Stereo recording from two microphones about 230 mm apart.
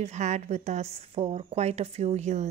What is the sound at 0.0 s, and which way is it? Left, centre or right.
A woman's voice, right.